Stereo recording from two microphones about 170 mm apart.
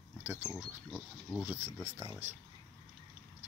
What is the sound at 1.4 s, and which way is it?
Speech, 10° right (ahead or behind).